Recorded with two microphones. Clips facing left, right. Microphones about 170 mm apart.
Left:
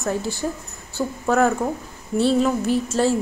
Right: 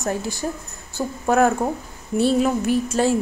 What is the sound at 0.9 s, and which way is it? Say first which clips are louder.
Speech: right 1 dB; 15° right (ahead or behind).